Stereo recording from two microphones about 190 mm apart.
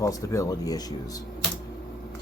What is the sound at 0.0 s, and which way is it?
Speech, 15° left (ahead or behind).